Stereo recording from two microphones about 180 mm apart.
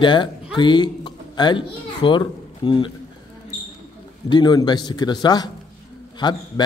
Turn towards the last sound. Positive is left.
turn(degrees=25)  # may be behind; listen again after turning